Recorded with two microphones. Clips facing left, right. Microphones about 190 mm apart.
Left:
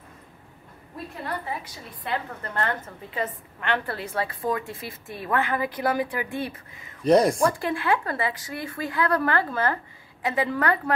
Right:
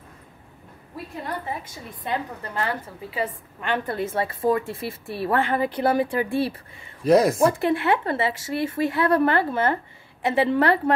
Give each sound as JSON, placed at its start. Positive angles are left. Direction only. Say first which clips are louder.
{"t": 2.0, "sound": "a woman's voice", "louder": "right 2 dB", "side_deg": -10}
{"t": 7.0, "sound": "speech", "louder": "right 1 dB", "side_deg": -5}
{"t": 7.4, "sound": "a woman's voice", "louder": "right 4 dB", "side_deg": -25}